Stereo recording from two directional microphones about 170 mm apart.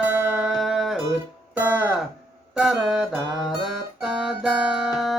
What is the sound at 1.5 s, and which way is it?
Music, 10° right (ahead or behind).